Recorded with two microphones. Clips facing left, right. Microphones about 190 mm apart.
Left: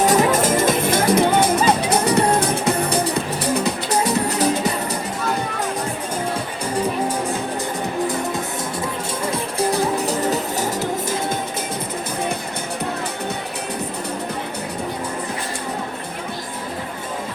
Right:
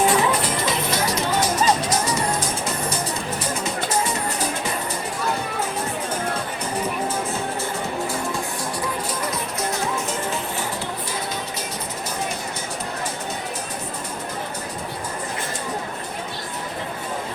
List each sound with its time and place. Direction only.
0.0 s music: 40° left (ahead or behind); by 3.9 s 65° left (ahead or behind)
9.2 s music: 30° left (ahead or behind)